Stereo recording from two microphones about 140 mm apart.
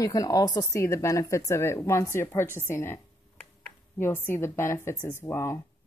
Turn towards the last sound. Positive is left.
turn(degrees=20)  # may be behind; listen again after turning